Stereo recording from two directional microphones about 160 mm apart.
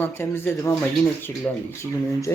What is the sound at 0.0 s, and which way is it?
Speech, 15° left (ahead or behind).